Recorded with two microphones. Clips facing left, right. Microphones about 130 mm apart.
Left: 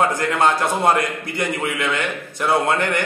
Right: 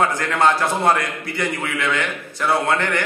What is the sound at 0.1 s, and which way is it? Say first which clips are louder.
A man's voice: even; 15° left (ahead or behind).